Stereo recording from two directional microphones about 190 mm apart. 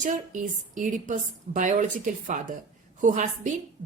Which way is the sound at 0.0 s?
40° right (ahead or behind).